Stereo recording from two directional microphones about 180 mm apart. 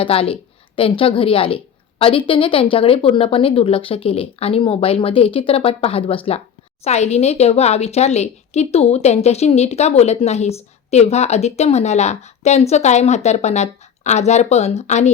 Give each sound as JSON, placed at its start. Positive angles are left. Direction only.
{"t": 0.0, "sound": "a woman's voice", "side_deg": 30}